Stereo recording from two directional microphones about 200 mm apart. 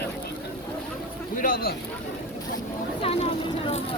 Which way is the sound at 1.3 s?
45° left (ahead or behind).